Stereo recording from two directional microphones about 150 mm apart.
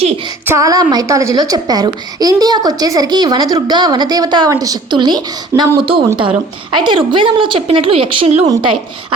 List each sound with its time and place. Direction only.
0.4 s a woman's voice: 20° right (ahead or behind); by 8.4 s 40° right (ahead or behind)